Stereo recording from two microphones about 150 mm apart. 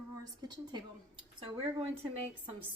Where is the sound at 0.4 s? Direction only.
30° right (ahead or behind).